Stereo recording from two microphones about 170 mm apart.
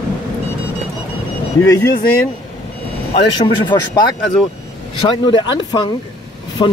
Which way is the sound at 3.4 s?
25° left (ahead or behind).